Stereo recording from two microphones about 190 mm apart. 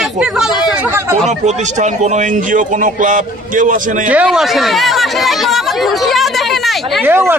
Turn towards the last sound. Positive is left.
turn(degrees=-10)  # may be behind; listen again after turning